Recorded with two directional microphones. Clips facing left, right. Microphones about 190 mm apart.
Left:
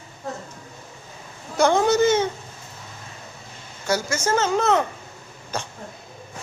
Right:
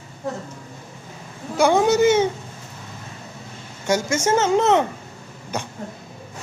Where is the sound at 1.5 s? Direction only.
10° right (ahead or behind).